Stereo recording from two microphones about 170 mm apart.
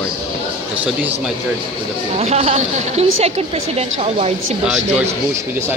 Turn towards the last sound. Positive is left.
turn(degrees=-40)  # may be behind; listen again after turning